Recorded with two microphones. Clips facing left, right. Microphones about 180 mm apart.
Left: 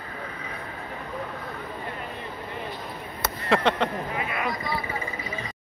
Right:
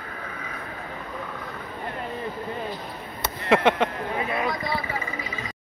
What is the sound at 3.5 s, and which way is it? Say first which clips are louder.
Speech: right 3 dB; 15° right (ahead or behind).